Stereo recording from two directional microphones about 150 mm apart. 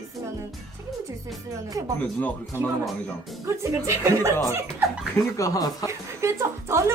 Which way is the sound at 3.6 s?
20° right (ahead or behind).